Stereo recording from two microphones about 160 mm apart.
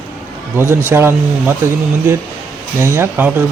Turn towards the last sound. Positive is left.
turn(degrees=-10)  # may be behind; listen again after turning